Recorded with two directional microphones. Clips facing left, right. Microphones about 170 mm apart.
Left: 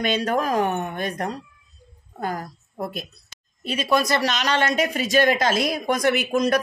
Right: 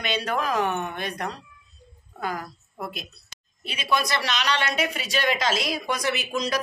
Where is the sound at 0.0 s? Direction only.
45° left (ahead or behind).